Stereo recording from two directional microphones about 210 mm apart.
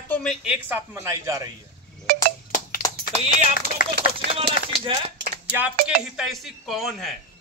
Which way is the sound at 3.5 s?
45° left (ahead or behind).